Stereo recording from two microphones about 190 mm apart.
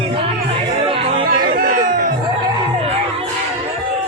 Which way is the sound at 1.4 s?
50° right (ahead or behind).